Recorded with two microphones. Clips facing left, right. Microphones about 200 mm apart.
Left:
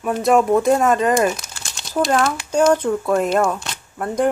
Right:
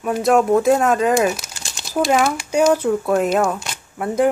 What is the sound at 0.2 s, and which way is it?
Speech, centre (ahead or behind).